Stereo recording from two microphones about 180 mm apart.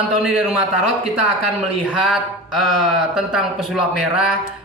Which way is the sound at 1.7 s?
5° right (ahead or behind).